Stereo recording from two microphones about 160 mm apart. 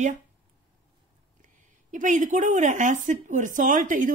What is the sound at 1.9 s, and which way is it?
Speech, 50° right (ahead or behind).